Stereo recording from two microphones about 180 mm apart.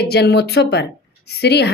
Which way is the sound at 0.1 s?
65° left (ahead or behind).